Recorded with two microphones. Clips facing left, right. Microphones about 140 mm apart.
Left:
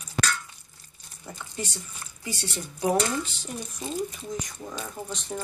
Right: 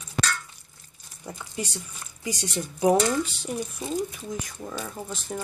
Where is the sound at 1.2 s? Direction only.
15° right (ahead or behind).